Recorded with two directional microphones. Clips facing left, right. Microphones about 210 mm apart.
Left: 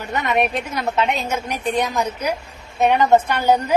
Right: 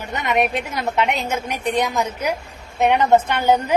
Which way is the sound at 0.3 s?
20° right (ahead or behind).